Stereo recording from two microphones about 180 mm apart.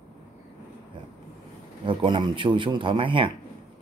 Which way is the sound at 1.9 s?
25° right (ahead or behind).